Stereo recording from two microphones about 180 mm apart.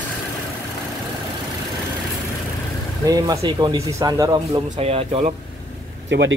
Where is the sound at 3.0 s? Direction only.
20° right (ahead or behind).